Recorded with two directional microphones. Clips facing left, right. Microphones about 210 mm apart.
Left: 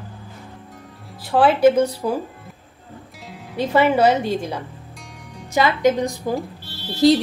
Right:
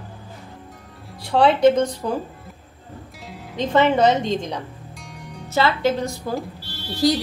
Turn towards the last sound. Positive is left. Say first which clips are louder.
# left 5 dB
turn(degrees=25)  # may be behind; listen again after turning